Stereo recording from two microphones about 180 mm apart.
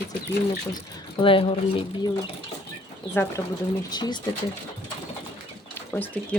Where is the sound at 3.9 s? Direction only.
25° left (ahead or behind).